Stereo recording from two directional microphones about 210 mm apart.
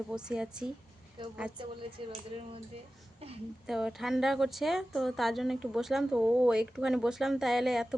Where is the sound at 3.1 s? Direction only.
30° right (ahead or behind).